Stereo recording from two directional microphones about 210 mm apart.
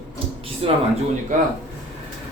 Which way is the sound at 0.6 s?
25° right (ahead or behind).